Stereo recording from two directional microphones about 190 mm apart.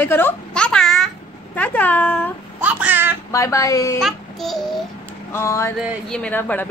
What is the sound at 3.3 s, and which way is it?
Speech, 15° left (ahead or behind).